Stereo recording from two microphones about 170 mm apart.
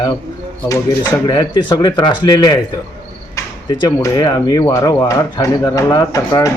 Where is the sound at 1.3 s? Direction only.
25° left (ahead or behind).